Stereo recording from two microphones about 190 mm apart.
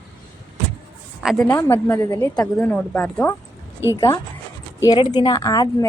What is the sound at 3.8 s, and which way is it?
Speech, 15° right (ahead or behind).